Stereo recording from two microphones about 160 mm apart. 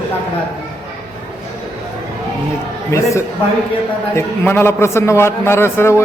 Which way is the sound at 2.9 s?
20° left (ahead or behind).